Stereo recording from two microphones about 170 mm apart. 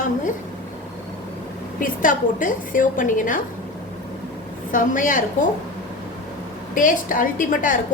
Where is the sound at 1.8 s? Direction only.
55° left (ahead or behind).